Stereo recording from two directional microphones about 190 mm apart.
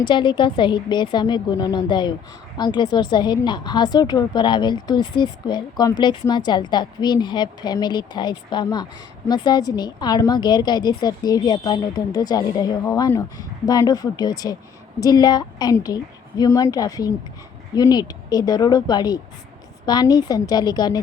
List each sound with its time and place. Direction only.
0.0 s a woman's voice: 25° left (ahead or behind)